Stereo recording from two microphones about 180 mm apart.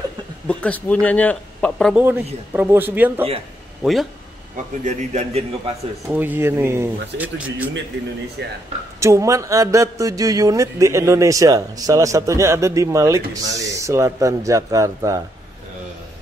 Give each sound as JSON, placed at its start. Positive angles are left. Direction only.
{"t": 0.5, "sound": "speech", "side_deg": 10}
{"t": 2.0, "sound": "speech", "side_deg": -10}
{"t": 4.8, "sound": "a man's voice", "side_deg": -40}
{"t": 6.0, "sound": "speech", "side_deg": -10}
{"t": 8.4, "sound": "speech", "side_deg": -70}
{"t": 9.0, "sound": "speech", "side_deg": -15}